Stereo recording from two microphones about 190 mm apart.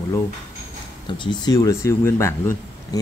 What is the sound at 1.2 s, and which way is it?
Speech, 20° left (ahead or behind).